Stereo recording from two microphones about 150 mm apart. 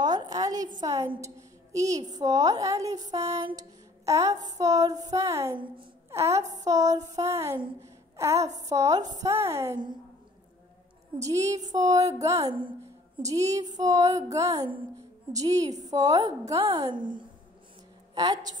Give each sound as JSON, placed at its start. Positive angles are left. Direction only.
{"t": 0.0, "sound": "a woman's voice", "side_deg": -25}
{"t": 11.1, "sound": "a woman's voice", "side_deg": -20}
{"t": 12.4, "sound": "a woman's voice", "side_deg": -35}
{"t": 13.2, "sound": "a woman's voice", "side_deg": -20}
{"t": 14.6, "sound": "a woman's voice", "side_deg": -35}
{"t": 15.3, "sound": "a woman's voice", "side_deg": -25}